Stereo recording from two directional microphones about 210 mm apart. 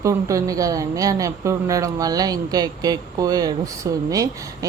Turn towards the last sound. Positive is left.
turn(degrees=-15)  # may be behind; listen again after turning